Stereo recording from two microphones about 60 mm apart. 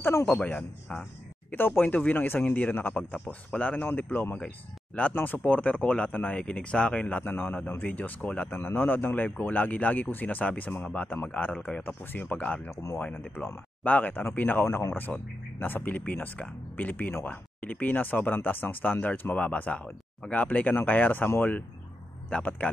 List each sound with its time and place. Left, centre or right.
0.0 s speech: left
0.4 s speech: left
1.5 s speech: left
12.7 s speech: left
13.8 s speech: left
14.6 s speech: left
15.6 s speech: left
22.4 s speech: left